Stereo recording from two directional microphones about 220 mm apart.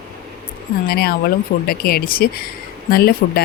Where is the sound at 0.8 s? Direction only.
45° left (ahead or behind).